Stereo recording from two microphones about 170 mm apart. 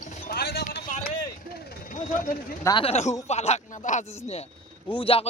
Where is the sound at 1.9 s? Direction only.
50° left (ahead or behind).